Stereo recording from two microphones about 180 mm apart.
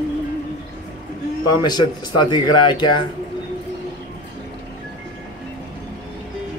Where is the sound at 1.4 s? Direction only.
25° left (ahead or behind).